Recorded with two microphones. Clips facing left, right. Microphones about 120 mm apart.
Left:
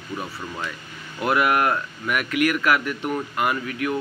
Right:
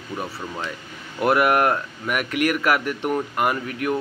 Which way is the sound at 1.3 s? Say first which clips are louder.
Right 1 dB; 45° right (ahead or behind).